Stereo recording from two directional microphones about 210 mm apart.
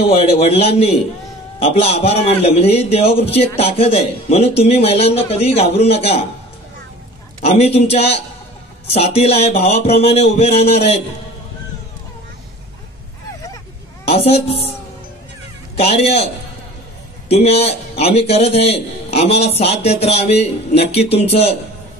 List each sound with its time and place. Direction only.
0.2 s a man's voice: 30° left (ahead or behind)
7.4 s a man's voice: 30° left (ahead or behind)
14.1 s a man's voice: 30° left (ahead or behind)
15.8 s a man's voice: 30° left (ahead or behind)
17.3 s a man's voice: 30° left (ahead or behind)